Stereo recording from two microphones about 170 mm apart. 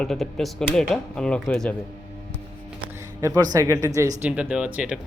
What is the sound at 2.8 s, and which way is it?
Speech, 20° right (ahead or behind).